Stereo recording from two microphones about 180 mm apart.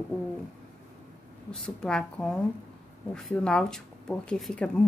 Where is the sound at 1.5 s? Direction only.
5° left (ahead or behind).